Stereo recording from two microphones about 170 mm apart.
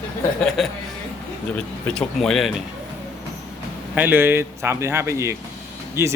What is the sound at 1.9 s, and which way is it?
Speech, 5° left (ahead or behind).